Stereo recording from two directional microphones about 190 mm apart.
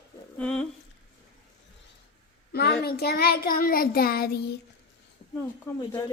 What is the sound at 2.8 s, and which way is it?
Child singing, 55° left (ahead or behind).